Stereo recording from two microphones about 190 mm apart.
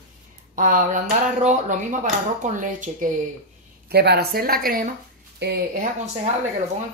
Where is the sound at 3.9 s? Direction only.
60° right (ahead or behind).